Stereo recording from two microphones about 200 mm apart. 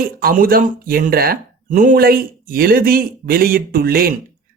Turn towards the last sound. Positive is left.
turn(degrees=-50)  # may be behind; listen again after turning